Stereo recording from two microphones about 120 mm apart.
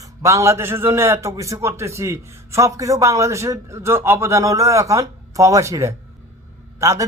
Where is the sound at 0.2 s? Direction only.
25° right (ahead or behind).